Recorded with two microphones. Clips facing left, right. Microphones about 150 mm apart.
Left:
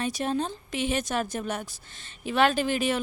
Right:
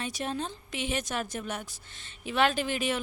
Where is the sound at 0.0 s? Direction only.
40° left (ahead or behind).